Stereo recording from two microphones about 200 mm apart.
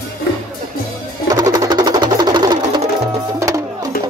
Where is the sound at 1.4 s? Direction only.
20° right (ahead or behind).